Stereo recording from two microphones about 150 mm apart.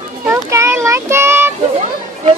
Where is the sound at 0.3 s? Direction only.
20° right (ahead or behind).